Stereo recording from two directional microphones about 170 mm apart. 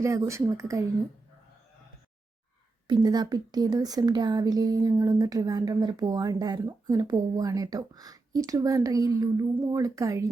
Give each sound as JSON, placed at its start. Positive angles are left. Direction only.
{"t": 0.0, "sound": "speech", "side_deg": -15}
{"t": 2.8, "sound": "speech", "side_deg": -25}